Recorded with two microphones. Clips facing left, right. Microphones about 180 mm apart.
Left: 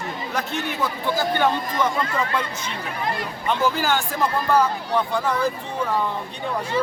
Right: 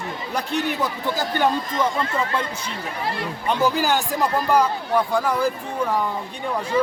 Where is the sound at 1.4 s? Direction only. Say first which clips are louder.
Even; 30° right (ahead or behind).